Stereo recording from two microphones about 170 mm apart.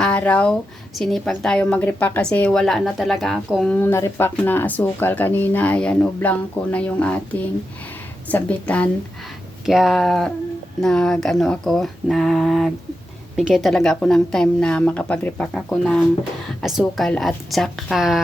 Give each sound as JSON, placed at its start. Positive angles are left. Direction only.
{"t": 0.0, "sound": "speech", "side_deg": 10}
{"t": 3.8, "sound": "a woman's voice", "side_deg": 15}